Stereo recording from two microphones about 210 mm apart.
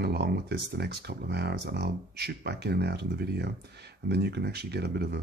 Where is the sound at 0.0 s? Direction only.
50° right (ahead or behind).